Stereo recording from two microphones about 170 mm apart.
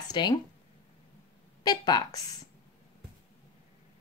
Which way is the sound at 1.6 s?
25° left (ahead or behind).